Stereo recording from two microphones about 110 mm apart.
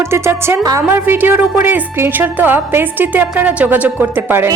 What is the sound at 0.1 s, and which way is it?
Music, 25° right (ahead or behind).